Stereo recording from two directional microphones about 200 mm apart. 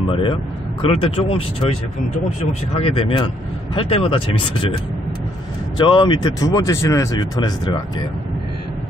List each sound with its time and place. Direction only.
0.1 s speech: 25° left (ahead or behind)
2.8 s speech: 30° left (ahead or behind)
5.8 s speech: 25° left (ahead or behind)